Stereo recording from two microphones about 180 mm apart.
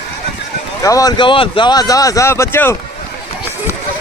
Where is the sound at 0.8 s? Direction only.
20° left (ahead or behind).